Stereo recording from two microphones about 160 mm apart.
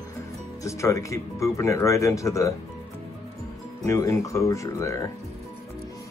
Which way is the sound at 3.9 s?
20° left (ahead or behind).